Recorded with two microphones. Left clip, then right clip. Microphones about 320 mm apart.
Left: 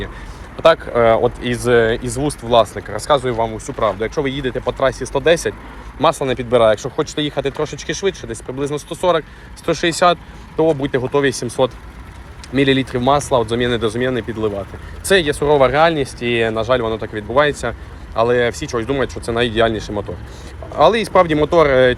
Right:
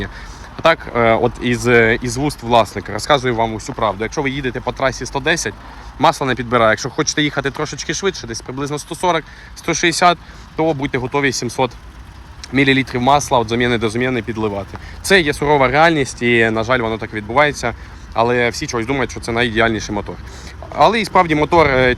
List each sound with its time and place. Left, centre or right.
0.5 s speech: centre
8.2 s speech: centre
8.4 s speech: centre